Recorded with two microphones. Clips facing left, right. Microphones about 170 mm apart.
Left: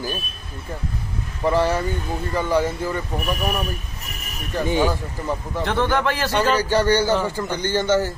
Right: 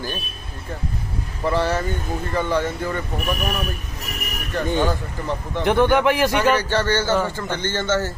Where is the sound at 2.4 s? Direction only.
10° left (ahead or behind).